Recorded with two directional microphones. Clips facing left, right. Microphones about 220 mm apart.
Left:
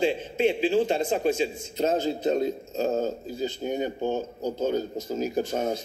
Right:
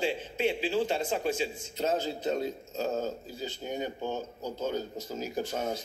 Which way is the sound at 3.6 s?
15° left (ahead or behind).